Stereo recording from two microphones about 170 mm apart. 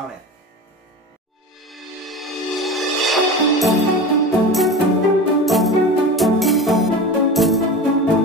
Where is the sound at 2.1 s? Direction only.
Centre (ahead or behind).